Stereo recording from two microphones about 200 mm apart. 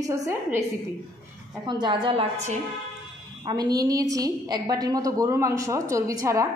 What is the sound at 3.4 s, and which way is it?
A woman's voice, 20° right (ahead or behind).